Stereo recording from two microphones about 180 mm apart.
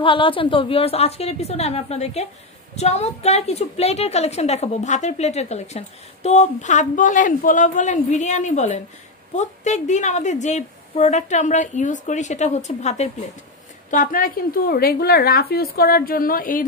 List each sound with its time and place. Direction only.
0.0 s a woman's voice: 30° left (ahead or behind); by 16.6 s 50° left (ahead or behind)